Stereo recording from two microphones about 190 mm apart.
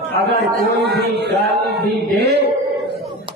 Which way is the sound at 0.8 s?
60° right (ahead or behind).